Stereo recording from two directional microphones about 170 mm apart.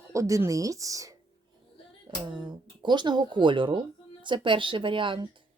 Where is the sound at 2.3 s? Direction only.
25° right (ahead or behind).